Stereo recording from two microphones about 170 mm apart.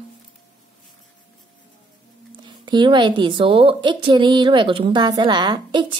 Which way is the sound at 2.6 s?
25° right (ahead or behind).